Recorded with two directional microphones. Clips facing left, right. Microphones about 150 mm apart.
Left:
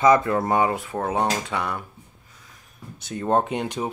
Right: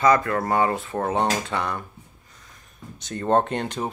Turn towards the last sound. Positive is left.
turn(degrees=10)  # may be behind; listen again after turning